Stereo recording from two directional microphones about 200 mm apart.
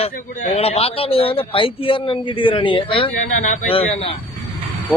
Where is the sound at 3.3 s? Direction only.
40° left (ahead or behind).